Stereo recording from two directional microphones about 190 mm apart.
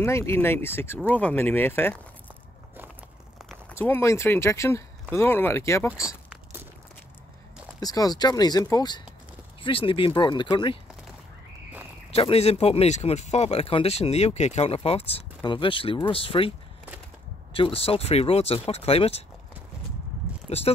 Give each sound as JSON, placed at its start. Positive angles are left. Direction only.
{"t": 0.0, "sound": "speech", "side_deg": 15}
{"t": 3.4, "sound": "speech", "side_deg": 10}
{"t": 7.8, "sound": "speech", "side_deg": 20}
{"t": 12.1, "sound": "speech", "side_deg": 30}
{"t": 20.4, "sound": "speech", "side_deg": 30}